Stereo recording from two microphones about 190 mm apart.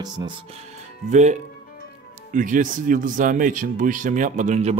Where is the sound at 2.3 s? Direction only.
45° right (ahead or behind).